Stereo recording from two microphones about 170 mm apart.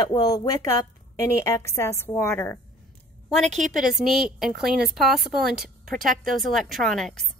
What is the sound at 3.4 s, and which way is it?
Speech, 45° right (ahead or behind).